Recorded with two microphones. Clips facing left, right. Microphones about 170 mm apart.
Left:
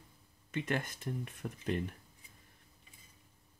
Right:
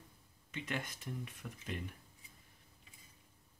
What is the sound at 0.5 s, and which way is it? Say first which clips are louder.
Speech: left 6 dB; 50° left (ahead or behind).